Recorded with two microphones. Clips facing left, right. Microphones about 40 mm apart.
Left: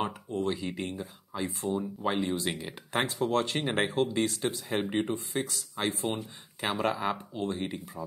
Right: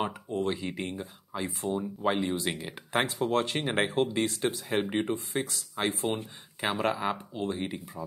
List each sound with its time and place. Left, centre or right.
0.5 s speech: centre
4.8 s speech: centre
5.3 s speech: centre
6.6 s speech: centre